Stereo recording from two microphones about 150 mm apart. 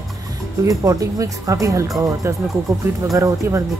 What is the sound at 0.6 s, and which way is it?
Speech, 20° right (ahead or behind).